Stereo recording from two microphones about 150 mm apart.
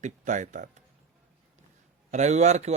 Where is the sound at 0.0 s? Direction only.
55° right (ahead or behind).